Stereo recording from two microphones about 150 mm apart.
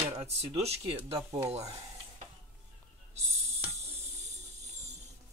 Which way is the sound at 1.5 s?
40° right (ahead or behind).